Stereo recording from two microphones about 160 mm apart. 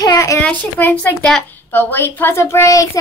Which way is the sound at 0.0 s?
20° left (ahead or behind).